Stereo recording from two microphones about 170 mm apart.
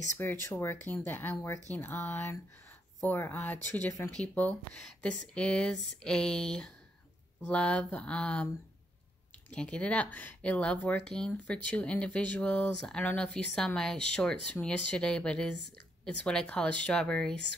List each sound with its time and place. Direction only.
0.2 s speech: 15° left (ahead or behind)
9.5 s speech: 5° left (ahead or behind)